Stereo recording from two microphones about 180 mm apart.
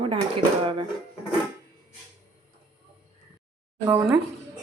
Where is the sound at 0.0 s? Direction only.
25° right (ahead or behind).